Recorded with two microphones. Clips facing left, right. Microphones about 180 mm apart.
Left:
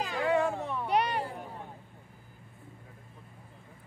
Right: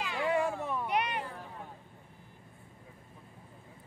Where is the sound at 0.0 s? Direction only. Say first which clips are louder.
Left 3 dB; 40° left (ahead or behind).